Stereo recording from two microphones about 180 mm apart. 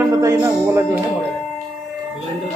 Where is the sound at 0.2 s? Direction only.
15° right (ahead or behind).